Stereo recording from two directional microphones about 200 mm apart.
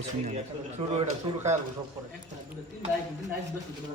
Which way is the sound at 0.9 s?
35° right (ahead or behind).